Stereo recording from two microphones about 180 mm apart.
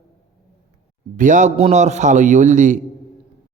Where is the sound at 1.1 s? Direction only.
45° right (ahead or behind).